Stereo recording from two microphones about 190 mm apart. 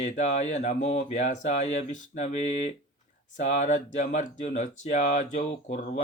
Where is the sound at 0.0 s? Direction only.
35° left (ahead or behind).